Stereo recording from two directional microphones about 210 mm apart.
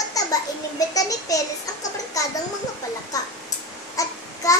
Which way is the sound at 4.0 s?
15° left (ahead or behind).